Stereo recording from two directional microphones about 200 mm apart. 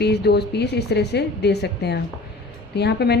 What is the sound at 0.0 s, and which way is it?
A woman's voice, 55° left (ahead or behind).